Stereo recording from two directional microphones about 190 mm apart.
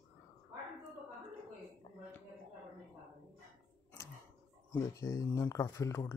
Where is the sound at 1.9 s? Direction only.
30° left (ahead or behind).